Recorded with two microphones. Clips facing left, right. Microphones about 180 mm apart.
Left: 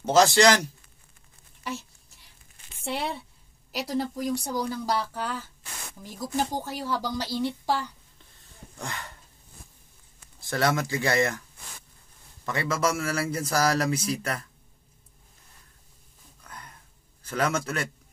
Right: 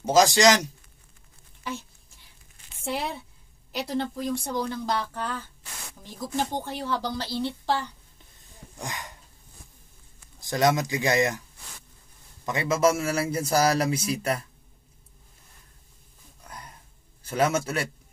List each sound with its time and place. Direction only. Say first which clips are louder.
0.0 s speech: even; 10° right (ahead or behind)
1.6 s a sound: even; centre (ahead or behind)
3.7 s speech: even; 5° left (ahead or behind)
8.7 s speech: right 1 dB; 15° right (ahead or behind)
10.4 s speech: right 3 dB; 15° right (ahead or behind)
12.4 s a man's voice: right 4 dB; 20° right (ahead or behind)
17.2 s a sound: right 3 dB; 25° right (ahead or behind)
17.5 s speech: right 2 dB; 10° right (ahead or behind)